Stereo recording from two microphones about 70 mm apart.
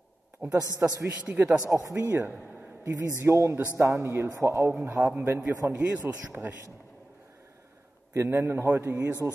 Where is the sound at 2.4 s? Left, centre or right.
Right.